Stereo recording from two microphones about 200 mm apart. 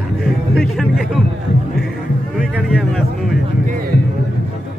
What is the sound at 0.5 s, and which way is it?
Speech, centre (ahead or behind).